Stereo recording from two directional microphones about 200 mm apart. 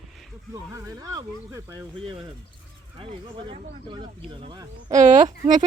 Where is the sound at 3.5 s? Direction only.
25° right (ahead or behind).